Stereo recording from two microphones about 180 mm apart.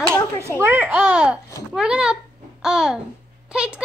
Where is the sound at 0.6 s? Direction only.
10° right (ahead or behind).